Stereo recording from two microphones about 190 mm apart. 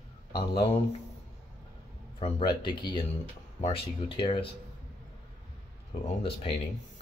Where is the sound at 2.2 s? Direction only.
30° left (ahead or behind).